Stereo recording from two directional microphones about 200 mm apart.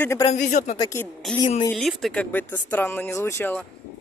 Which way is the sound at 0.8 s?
15° left (ahead or behind).